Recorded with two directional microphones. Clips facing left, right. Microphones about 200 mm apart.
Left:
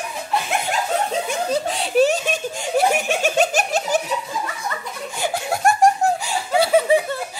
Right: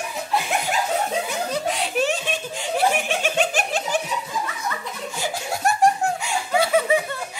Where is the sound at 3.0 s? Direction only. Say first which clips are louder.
Left 3 dB; 45° left (ahead or behind).